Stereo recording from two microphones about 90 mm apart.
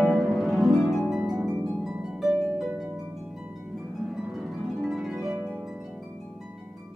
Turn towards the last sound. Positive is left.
turn(degrees=-5)  # may be behind; listen again after turning